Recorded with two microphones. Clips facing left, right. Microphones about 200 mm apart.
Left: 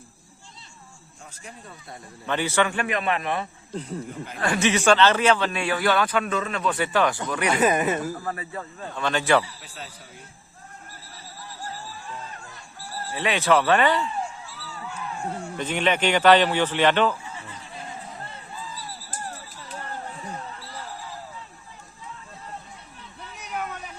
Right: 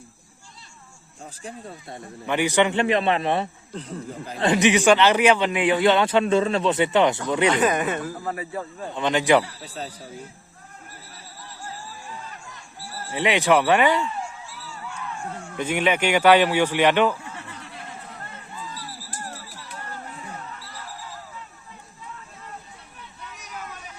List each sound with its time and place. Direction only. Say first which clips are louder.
1.2 s speech: right 7 dB; 30° right (ahead or behind)
2.2 s speech: right 3 dB; 15° right (ahead or behind)
7.5 s speech: even; 10° left (ahead or behind)
8.2 s speech: right 3 dB; 10° right (ahead or behind)
9.6 s speech: right 7 dB; 40° right (ahead or behind)
13.1 s speech: right 2 dB; 20° right (ahead or behind)
15.2 s speech: left 6 dB; 35° left (ahead or behind)
15.5 s speech: right 2 dB; 10° right (ahead or behind)
17.3 s a sound: right 1 dB; 65° right (ahead or behind)
18.7 s a sound: even; 70° right (ahead or behind)